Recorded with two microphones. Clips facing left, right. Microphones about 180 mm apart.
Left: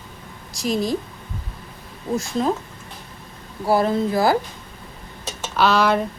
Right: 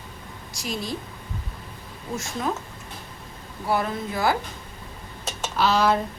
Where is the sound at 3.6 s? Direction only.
35° left (ahead or behind).